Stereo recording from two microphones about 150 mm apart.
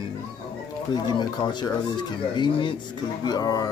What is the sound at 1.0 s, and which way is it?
Speech, 30° left (ahead or behind).